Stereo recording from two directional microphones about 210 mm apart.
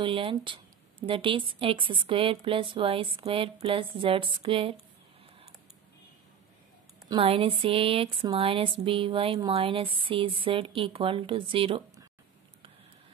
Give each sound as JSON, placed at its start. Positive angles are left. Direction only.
{"t": 0.0, "sound": "speech", "side_deg": -25}
{"t": 7.1, "sound": "speech", "side_deg": -25}